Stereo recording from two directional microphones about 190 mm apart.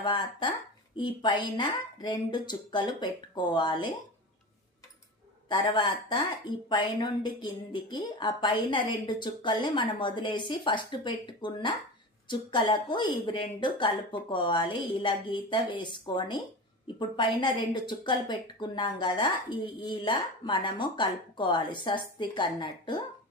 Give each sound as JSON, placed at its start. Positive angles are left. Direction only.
{"t": 0.0, "sound": "a woman's voice", "side_deg": 25}
{"t": 5.5, "sound": "a woman's voice", "side_deg": 25}